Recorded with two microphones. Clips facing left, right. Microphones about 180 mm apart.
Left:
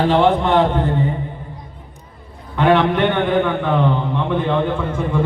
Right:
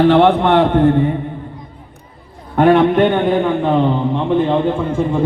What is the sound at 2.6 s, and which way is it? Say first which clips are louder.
Speech: right 4 dB; 50° right (ahead or behind).